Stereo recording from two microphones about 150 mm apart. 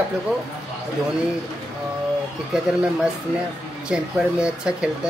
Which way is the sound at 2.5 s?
5° right (ahead or behind).